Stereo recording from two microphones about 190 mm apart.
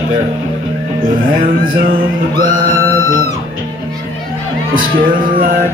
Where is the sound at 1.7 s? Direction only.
45° right (ahead or behind).